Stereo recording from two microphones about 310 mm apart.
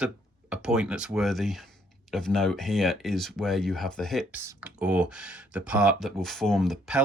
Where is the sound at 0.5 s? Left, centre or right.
Centre.